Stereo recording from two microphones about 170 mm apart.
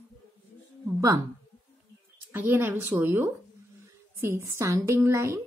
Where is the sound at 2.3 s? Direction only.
10° right (ahead or behind).